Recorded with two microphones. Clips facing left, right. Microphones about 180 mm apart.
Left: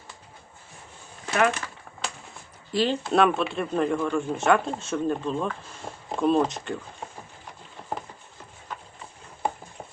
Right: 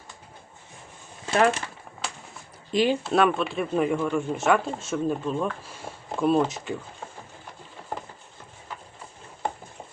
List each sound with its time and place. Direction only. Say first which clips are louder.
1.3 s speech: right 2 dB; 30° right (ahead or behind)
2.7 s speech: right 2 dB; 15° right (ahead or behind)
3.0 s speech: even; centre (ahead or behind)